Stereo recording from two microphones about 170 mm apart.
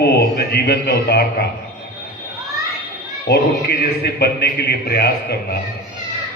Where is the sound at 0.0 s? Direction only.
70° left (ahead or behind).